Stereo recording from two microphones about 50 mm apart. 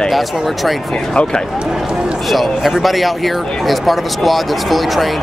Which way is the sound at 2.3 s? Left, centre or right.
Centre.